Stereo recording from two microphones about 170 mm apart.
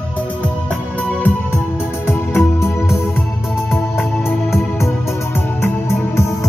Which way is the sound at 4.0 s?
15° left (ahead or behind).